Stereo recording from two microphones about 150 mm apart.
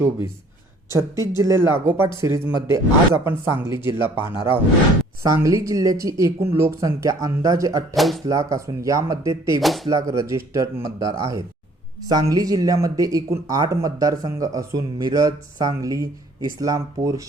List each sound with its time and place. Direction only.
0.9 s speech: 20° right (ahead or behind)
7.9 s speech: centre (ahead or behind)
8.3 s speech: 20° right (ahead or behind)
9.6 s speech: centre (ahead or behind)
9.9 s speech: 20° right (ahead or behind)